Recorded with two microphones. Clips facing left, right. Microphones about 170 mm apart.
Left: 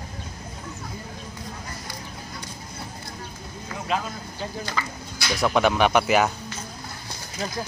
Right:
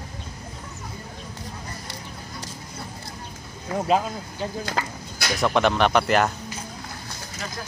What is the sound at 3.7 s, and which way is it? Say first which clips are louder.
Speech: right 9 dB; 25° right (ahead or behind).